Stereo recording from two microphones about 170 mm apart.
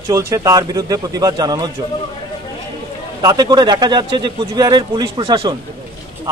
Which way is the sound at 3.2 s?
25° right (ahead or behind).